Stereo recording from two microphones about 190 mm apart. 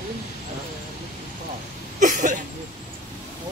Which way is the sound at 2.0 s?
40° right (ahead or behind).